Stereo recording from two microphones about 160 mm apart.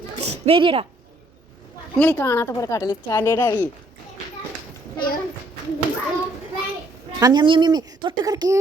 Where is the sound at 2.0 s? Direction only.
15° left (ahead or behind).